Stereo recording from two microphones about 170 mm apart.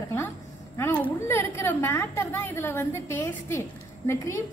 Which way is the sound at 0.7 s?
10° left (ahead or behind).